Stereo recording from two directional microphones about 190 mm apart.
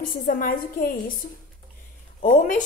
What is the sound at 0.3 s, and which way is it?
Speech, 45° left (ahead or behind).